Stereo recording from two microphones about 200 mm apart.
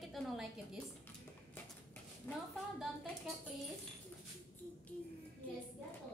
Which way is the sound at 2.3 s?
10° left (ahead or behind).